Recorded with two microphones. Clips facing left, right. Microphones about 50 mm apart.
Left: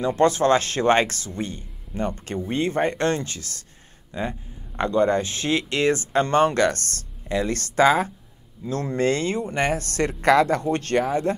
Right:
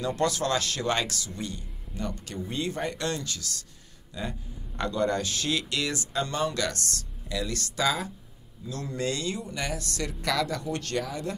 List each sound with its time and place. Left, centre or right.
0.0 s speech: left